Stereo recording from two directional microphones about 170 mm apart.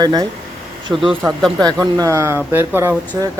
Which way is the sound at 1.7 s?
20° right (ahead or behind).